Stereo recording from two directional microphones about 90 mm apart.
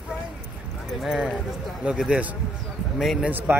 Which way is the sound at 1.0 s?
5° right (ahead or behind).